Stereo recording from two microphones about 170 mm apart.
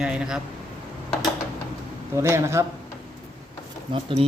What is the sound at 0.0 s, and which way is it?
Speech, 5° right (ahead or behind).